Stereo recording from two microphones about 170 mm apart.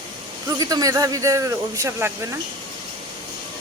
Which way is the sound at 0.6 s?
20° right (ahead or behind).